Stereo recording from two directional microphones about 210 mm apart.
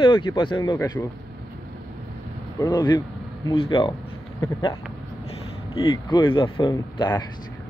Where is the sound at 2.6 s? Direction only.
20° left (ahead or behind).